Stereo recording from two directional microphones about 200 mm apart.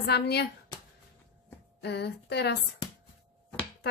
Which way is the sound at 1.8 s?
55° left (ahead or behind).